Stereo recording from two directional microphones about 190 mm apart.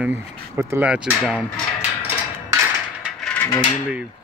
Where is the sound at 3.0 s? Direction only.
Centre (ahead or behind).